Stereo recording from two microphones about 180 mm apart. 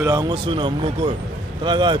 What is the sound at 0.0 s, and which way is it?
Speech, 20° right (ahead or behind).